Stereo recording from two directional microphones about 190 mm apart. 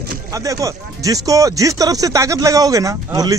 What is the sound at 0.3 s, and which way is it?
Speech, 15° right (ahead or behind).